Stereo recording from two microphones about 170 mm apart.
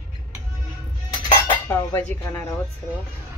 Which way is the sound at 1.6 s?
15° left (ahead or behind).